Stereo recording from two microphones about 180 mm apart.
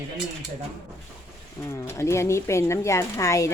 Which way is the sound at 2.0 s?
15° left (ahead or behind).